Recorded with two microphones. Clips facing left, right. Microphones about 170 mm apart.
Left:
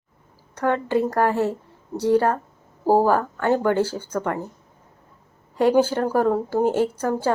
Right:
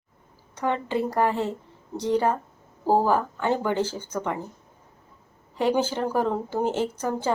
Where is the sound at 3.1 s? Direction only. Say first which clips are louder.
Left 3 dB; 15° right (ahead or behind).